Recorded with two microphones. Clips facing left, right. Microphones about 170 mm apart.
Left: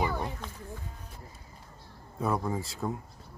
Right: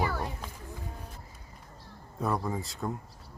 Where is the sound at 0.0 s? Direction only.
20° left (ahead or behind).